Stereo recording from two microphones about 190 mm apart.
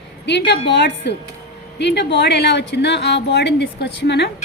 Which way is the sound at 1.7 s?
65° left (ahead or behind).